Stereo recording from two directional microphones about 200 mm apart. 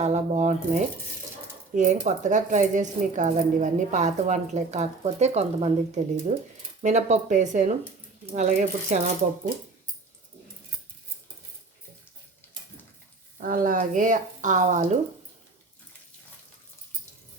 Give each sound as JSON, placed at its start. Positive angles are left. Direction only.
{"t": 0.0, "sound": "a woman's voice", "side_deg": -35}
{"t": 13.4, "sound": "a woman's voice", "side_deg": -45}